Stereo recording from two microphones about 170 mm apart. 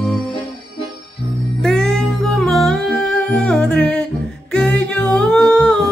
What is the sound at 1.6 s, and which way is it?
Music, 5° left (ahead or behind).